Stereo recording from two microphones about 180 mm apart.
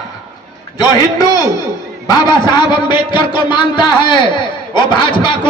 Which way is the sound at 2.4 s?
25° left (ahead or behind).